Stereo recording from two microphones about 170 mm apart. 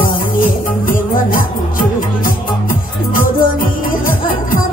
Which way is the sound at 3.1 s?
55° left (ahead or behind).